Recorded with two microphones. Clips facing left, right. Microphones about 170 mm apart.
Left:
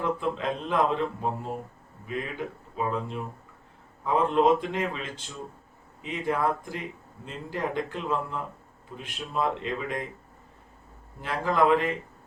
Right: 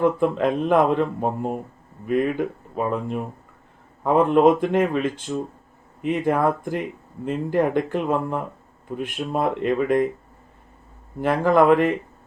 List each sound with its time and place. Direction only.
0.0 s speech: 55° right (ahead or behind)
11.2 s speech: 55° right (ahead or behind)